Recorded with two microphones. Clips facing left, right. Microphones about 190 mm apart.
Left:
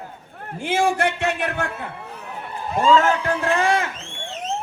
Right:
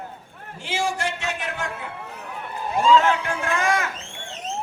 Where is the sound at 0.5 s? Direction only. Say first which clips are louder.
Left 6 dB; 55° left (ahead or behind).